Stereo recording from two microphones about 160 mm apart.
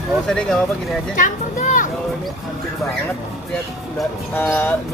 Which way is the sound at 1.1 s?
55° left (ahead or behind).